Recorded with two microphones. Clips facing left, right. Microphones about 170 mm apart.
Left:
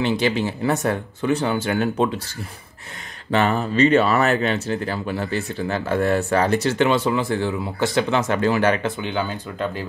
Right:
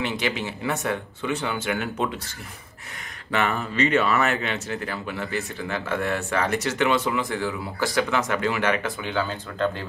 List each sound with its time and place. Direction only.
0.0 s speech: 35° left (ahead or behind)
3.3 s speech: 30° left (ahead or behind)
8.8 s speech: 20° left (ahead or behind)